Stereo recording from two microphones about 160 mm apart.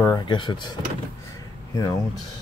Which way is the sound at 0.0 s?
25° left (ahead or behind).